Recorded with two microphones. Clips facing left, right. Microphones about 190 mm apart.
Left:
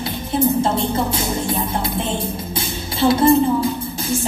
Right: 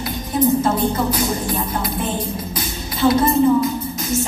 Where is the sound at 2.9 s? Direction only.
30° left (ahead or behind).